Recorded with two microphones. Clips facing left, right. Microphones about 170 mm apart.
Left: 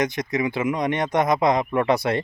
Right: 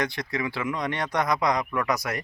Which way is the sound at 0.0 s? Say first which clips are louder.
Left 5 dB; 20° left (ahead or behind).